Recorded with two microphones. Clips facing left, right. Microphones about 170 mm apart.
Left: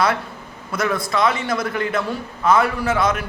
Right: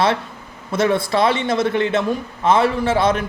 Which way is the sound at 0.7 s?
25° right (ahead or behind).